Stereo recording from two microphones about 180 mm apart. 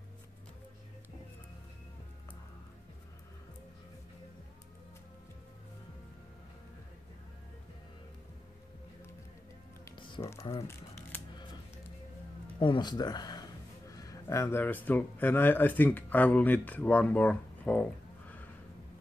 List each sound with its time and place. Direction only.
9.8 s music: 25° left (ahead or behind)
10.5 s speech: 15° left (ahead or behind)
12.5 s speech: 25° left (ahead or behind); by 17.8 s 5° left (ahead or behind)